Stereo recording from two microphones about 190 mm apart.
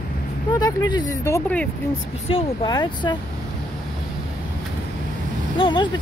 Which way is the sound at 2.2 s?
25° left (ahead or behind).